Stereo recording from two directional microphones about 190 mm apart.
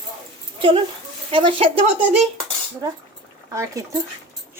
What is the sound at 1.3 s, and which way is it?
Speech, 30° right (ahead or behind).